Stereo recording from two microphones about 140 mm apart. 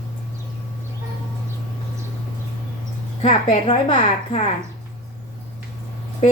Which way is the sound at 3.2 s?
40° left (ahead or behind).